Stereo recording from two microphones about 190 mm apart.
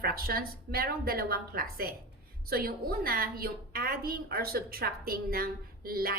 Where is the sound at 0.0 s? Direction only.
50° right (ahead or behind).